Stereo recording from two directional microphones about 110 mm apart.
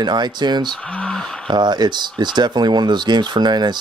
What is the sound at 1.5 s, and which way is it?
Speech, 40° right (ahead or behind).